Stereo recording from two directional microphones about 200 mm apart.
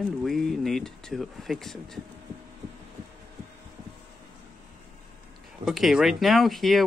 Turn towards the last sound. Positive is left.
turn(degrees=0)  # may be behind; listen again after turning